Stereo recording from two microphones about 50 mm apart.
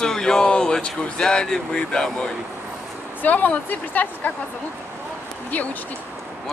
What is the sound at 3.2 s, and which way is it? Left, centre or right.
Speech, left.